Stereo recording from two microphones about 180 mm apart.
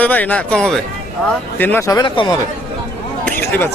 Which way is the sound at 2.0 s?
25° left (ahead or behind).